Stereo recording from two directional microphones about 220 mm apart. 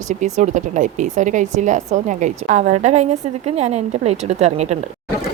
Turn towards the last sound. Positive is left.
turn(degrees=-30)  # may be behind; listen again after turning